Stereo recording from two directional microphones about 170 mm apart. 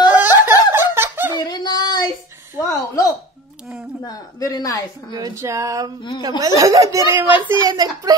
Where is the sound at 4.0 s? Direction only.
20° left (ahead or behind).